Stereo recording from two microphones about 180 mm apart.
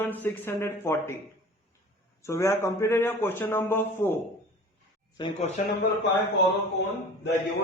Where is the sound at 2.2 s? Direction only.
15° left (ahead or behind).